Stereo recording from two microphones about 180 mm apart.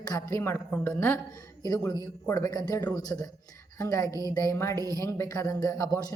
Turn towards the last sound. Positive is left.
turn(degrees=20)  # may be behind; listen again after turning